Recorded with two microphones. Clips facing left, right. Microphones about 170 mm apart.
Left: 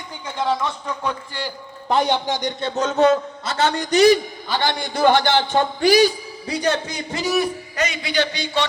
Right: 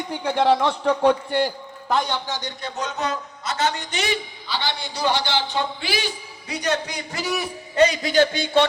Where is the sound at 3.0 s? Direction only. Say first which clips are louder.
Left 11 dB; 30° left (ahead or behind).